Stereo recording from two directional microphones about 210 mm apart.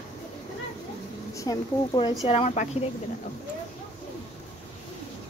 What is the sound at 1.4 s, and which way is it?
Speech, 20° left (ahead or behind).